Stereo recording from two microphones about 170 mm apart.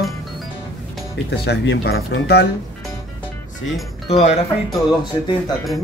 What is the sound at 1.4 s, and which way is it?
Speech, 85° left.